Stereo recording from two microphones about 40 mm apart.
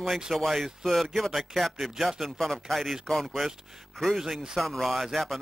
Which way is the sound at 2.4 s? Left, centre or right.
Centre.